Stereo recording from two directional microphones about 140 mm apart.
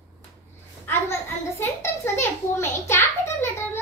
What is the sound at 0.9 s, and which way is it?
Speech, 15° left (ahead or behind).